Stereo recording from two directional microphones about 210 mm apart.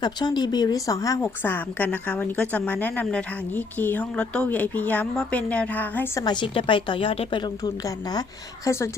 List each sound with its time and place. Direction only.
0.0 s speech: 20° left (ahead or behind)
6.2 s a woman's voice: 20° left (ahead or behind)